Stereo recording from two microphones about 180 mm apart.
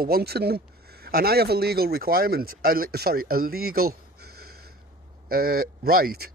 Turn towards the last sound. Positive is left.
turn(degrees=-55)  # may be behind; listen again after turning